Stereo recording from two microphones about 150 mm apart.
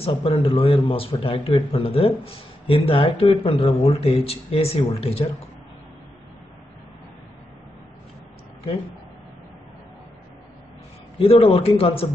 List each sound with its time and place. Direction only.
0.0 s speech: 40° left (ahead or behind)
11.1 s speech: 40° left (ahead or behind)